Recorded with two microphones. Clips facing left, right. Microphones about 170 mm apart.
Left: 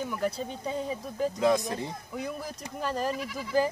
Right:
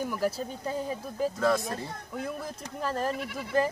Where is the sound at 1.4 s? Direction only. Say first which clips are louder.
Left 3 dB; 15° left (ahead or behind).